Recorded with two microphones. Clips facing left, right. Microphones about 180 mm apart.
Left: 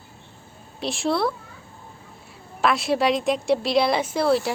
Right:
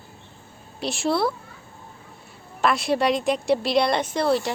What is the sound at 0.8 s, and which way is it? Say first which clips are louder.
Speech: even; centre (ahead or behind).